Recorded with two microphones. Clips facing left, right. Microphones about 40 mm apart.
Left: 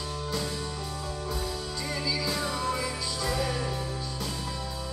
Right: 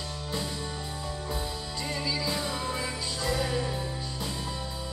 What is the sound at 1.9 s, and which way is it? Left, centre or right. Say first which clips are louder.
Music: even; centre.